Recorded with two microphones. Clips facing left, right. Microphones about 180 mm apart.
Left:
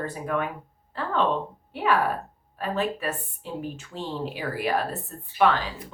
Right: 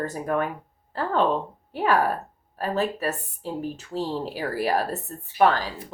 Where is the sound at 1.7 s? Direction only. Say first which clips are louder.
Right 1 dB; 40° right (ahead or behind).